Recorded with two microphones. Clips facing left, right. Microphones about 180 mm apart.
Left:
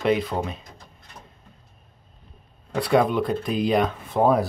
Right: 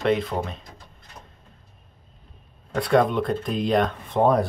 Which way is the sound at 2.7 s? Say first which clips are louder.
Even; centre (ahead or behind).